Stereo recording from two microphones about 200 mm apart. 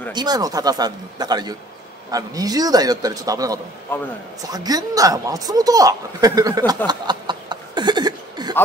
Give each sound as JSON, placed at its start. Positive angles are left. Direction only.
{"t": 0.1, "sound": "speech", "side_deg": -20}
{"t": 3.9, "sound": "a man's voice", "side_deg": 10}
{"t": 4.4, "sound": "speech", "side_deg": -20}
{"t": 6.9, "sound": "chuckle", "side_deg": -20}